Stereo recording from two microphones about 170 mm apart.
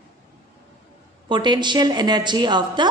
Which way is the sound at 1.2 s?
25° right (ahead or behind).